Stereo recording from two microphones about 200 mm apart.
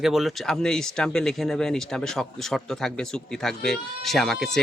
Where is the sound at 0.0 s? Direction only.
Centre (ahead or behind).